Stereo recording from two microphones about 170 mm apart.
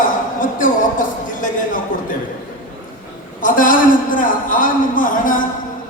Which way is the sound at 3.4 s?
55° left (ahead or behind).